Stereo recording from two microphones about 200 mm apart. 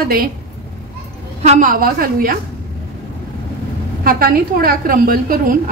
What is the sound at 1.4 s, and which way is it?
Speech, 40° right (ahead or behind).